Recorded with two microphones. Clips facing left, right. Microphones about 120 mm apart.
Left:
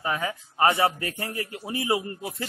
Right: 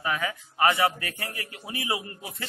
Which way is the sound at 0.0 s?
30° left (ahead or behind).